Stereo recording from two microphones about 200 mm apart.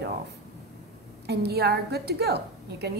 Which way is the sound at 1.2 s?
55° right (ahead or behind).